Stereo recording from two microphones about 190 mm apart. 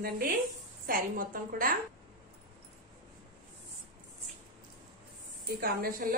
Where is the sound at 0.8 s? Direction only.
50° right (ahead or behind).